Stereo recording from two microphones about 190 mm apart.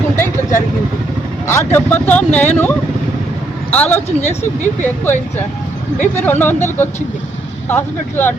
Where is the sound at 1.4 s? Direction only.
15° left (ahead or behind).